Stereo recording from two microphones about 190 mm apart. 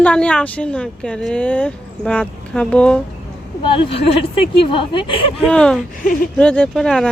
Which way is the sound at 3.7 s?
30° left (ahead or behind).